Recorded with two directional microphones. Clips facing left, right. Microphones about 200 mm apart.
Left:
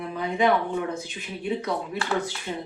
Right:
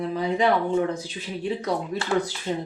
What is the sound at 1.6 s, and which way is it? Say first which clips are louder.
Speech: right 2 dB; 35° right (ahead or behind).